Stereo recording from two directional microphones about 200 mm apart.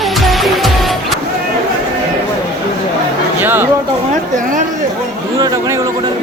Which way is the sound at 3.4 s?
10° right (ahead or behind).